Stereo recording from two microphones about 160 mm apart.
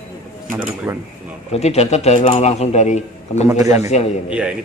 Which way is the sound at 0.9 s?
20° right (ahead or behind).